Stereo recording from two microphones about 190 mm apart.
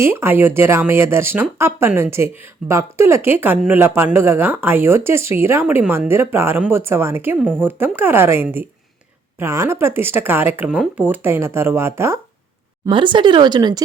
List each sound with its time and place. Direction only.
0.0 s speech: 15° right (ahead or behind)
12.8 s speech: 25° right (ahead or behind)